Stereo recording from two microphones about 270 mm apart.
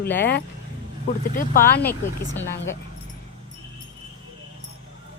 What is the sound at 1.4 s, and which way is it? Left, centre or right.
Speech, left.